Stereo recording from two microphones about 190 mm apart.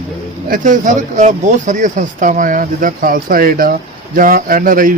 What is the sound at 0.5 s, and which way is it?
A man's voice, 45° right (ahead or behind).